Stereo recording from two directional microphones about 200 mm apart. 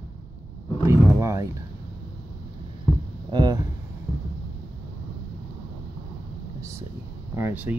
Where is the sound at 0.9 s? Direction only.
15° right (ahead or behind).